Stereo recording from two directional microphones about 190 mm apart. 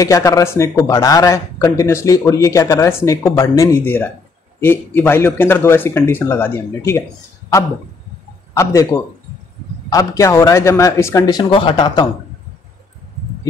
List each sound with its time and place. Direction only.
0.0 s speech: 20° left (ahead or behind)
8.5 s speech: 15° left (ahead or behind)